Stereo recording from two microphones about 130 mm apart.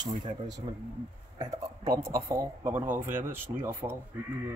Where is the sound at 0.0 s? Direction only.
35° right (ahead or behind); by 3.9 s 15° right (ahead or behind).